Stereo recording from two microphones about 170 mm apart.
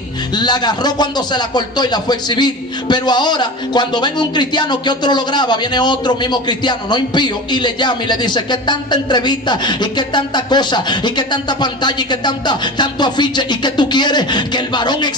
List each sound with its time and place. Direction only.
0.4 s speech: 25° left (ahead or behind)